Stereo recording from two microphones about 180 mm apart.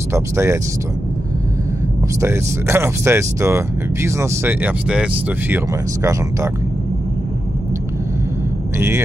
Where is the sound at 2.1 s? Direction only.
15° right (ahead or behind).